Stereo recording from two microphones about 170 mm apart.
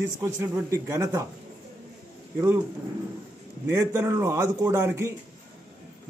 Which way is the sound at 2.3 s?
15° right (ahead or behind).